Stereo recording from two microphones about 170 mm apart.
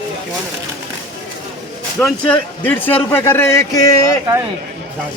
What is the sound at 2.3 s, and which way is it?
Speech, 10° left (ahead or behind).